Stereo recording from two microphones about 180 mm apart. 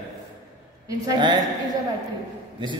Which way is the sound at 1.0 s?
25° right (ahead or behind).